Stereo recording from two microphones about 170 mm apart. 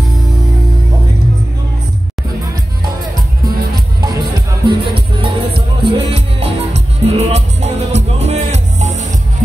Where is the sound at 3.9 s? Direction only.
25° right (ahead or behind).